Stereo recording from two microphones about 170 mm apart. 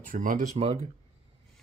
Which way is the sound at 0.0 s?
55° right (ahead or behind).